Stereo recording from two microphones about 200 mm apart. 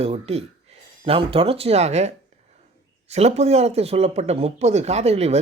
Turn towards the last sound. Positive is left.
turn(degrees=-30)  # may be behind; listen again after turning